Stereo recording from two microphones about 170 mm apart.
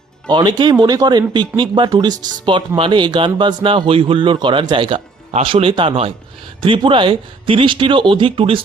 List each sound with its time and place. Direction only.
0.3 s speech: 25° right (ahead or behind)